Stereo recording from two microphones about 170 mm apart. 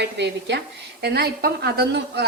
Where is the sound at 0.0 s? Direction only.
90° right.